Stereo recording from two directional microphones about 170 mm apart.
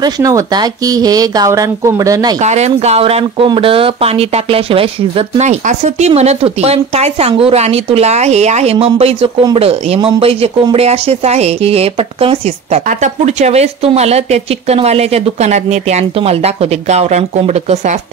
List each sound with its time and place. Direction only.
0.0 s speech: 20° right (ahead or behind)
2.4 s speech: 40° right (ahead or behind)